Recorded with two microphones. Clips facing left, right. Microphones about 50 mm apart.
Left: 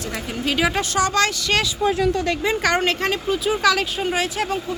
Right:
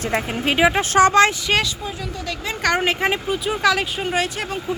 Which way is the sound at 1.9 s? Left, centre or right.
Left.